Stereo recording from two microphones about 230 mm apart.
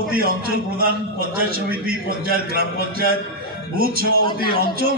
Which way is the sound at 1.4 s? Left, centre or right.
Right.